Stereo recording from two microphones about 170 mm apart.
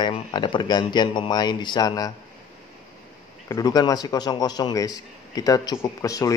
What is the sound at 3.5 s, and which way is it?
A man's voice, 20° left (ahead or behind).